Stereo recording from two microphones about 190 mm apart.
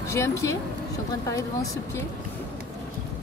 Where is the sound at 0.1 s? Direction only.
15° left (ahead or behind).